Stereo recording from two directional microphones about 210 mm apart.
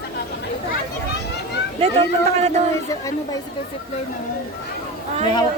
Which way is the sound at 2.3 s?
30° right (ahead or behind).